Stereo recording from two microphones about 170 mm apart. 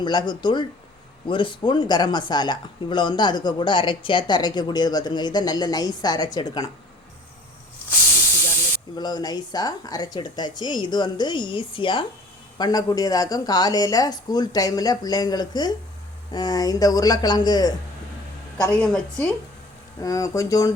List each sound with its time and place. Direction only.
0.0 s speech: 25° left (ahead or behind)
9.0 s speech: 25° left (ahead or behind)
18.8 s a woman's voice: 5° left (ahead or behind)
20.0 s speech: 20° left (ahead or behind)